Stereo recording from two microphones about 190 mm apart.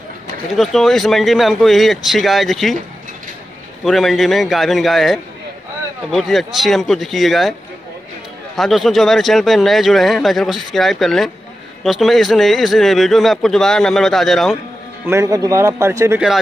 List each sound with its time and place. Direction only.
0.6 s a man's voice: centre (ahead or behind)
3.8 s a man's voice: centre (ahead or behind)
8.5 s a man's voice: centre (ahead or behind)
15.0 s a man's voice: 15° right (ahead or behind)